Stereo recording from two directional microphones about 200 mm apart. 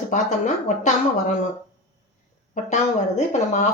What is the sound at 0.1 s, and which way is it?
Speech, 40° left (ahead or behind).